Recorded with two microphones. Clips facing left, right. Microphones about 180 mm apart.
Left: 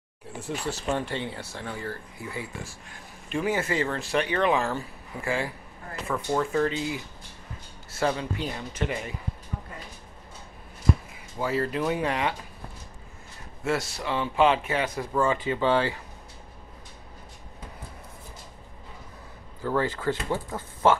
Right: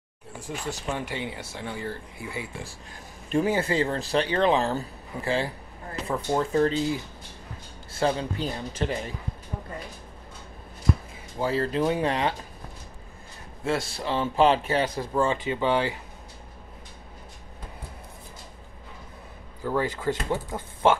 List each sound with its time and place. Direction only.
0.7 s speech: 15° right (ahead or behind)
3.3 s speech: 35° right (ahead or behind)
7.9 s speech: 30° right (ahead or behind)
11.3 s speech: 30° right (ahead or behind)
13.7 s speech: 30° right (ahead or behind)
19.6 s speech: 15° right (ahead or behind)